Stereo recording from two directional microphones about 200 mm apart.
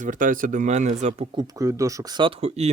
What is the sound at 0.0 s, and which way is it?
Speech, 40° right (ahead or behind).